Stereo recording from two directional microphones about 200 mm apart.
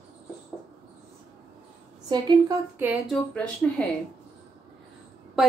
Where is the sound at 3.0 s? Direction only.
5° left (ahead or behind).